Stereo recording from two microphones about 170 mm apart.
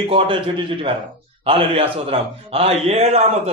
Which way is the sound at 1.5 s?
35° right (ahead or behind).